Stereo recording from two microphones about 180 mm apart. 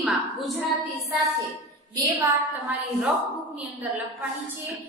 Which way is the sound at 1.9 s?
20° right (ahead or behind).